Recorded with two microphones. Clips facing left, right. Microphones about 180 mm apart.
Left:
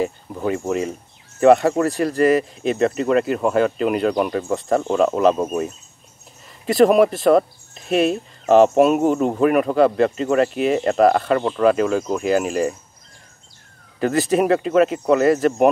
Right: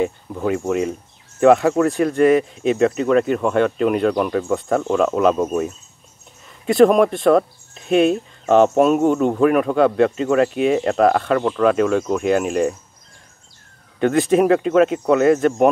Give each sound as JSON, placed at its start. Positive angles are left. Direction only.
{"t": 0.5, "sound": "speech", "side_deg": 0}
{"t": 5.3, "sound": "cricket", "side_deg": 15}
{"t": 6.6, "sound": "speech", "side_deg": 0}
{"t": 13.9, "sound": "speech", "side_deg": 0}